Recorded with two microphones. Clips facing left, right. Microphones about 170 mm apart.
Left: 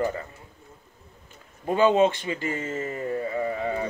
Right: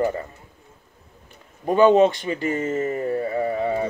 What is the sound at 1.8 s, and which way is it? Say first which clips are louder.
Speech: right 5 dB; 45° right (ahead or behind).